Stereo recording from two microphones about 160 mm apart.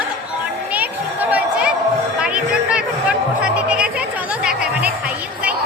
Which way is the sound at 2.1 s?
5° right (ahead or behind).